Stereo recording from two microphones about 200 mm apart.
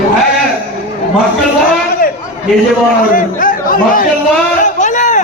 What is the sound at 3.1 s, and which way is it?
Speech, 45° left (ahead or behind).